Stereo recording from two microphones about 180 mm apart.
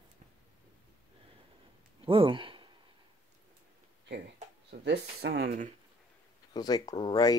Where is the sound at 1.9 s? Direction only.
30° right (ahead or behind).